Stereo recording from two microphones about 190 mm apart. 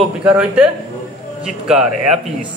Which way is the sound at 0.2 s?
5° right (ahead or behind).